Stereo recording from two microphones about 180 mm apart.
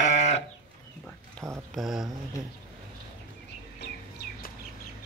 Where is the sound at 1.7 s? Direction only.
Centre (ahead or behind).